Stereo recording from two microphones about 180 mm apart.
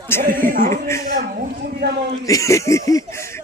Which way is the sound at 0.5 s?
50° right (ahead or behind).